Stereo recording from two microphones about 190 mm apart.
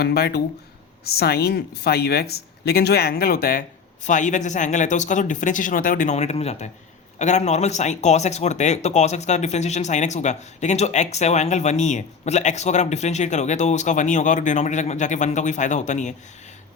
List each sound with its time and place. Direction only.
0.0 s speech: 55° left (ahead or behind)
4.0 s speech: 40° left (ahead or behind)